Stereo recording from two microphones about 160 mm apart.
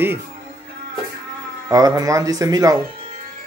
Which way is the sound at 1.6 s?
20° right (ahead or behind).